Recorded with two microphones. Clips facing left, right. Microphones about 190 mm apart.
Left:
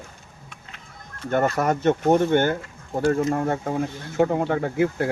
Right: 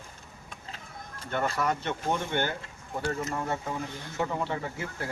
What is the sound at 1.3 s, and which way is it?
Speech, 50° left (ahead or behind).